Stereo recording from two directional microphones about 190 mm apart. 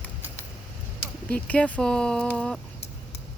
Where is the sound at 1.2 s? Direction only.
5° left (ahead or behind).